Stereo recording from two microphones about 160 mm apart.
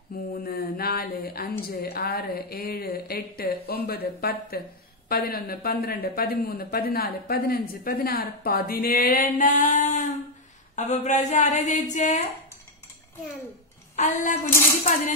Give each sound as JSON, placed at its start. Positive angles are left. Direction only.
{"t": 0.3, "sound": "speech", "side_deg": 70}
{"t": 13.9, "sound": "speech", "side_deg": 50}